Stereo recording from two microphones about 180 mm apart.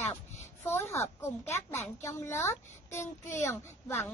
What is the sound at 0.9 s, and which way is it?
A woman's voice, 15° left (ahead or behind).